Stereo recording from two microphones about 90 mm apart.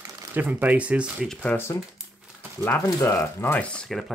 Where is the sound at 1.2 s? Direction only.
10° left (ahead or behind).